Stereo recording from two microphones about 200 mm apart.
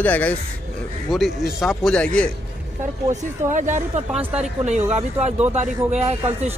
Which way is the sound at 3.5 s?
40° right (ahead or behind).